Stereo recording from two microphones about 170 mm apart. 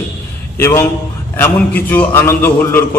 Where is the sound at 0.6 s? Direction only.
15° left (ahead or behind).